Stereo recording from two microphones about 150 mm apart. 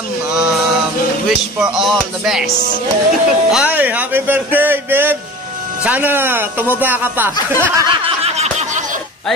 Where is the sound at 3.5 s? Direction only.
10° right (ahead or behind).